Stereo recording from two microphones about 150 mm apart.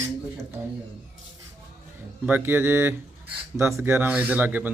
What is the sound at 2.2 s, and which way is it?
Speech, 15° right (ahead or behind).